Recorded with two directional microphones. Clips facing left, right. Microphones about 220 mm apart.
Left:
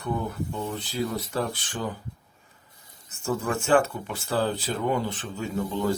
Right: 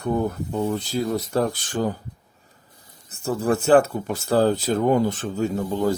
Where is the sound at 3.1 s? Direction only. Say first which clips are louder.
Right 5 dB; 35° right (ahead or behind).